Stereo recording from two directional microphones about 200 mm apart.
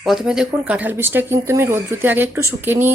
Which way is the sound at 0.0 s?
5° right (ahead or behind).